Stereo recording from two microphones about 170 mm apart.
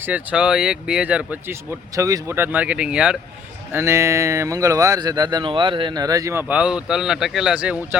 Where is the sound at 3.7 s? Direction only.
15° right (ahead or behind).